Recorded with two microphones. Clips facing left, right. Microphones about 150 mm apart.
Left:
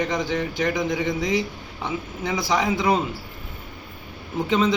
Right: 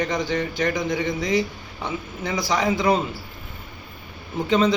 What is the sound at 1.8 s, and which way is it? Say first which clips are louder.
Speech: left 1 dB; 20° left (ahead or behind).